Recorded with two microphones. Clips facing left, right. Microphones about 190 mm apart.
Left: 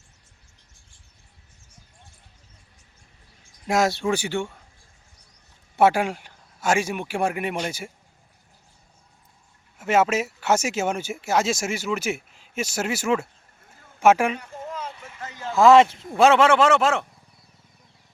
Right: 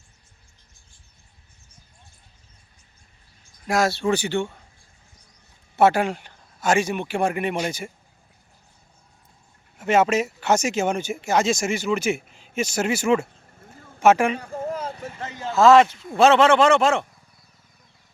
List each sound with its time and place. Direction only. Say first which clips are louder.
3.7 s speech: right 1 dB; 20° left (ahead or behind)
5.7 s speech: right 1 dB; 10° left (ahead or behind)
9.7 s speech: right 2 dB; 5° left (ahead or behind)
13.7 s a sound: right 6 dB; 45° right (ahead or behind)
14.0 s speech: right 1 dB; 10° left (ahead or behind)
14.5 s a sound: right 6 dB; 35° right (ahead or behind)
15.5 s speech: even; 15° left (ahead or behind)
16.2 s speech: right 1 dB; 10° left (ahead or behind)